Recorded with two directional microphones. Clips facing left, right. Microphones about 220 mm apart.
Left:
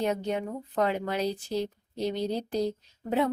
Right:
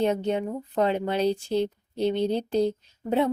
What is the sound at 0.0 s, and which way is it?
Speech, 25° right (ahead or behind).